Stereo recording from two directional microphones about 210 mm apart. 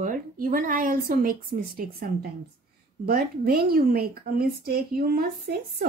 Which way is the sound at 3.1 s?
45° right (ahead or behind).